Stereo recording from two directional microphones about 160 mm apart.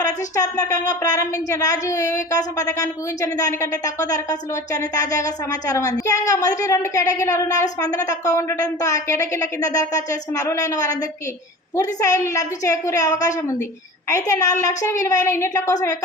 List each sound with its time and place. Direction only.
0.3 s speech: 20° left (ahead or behind)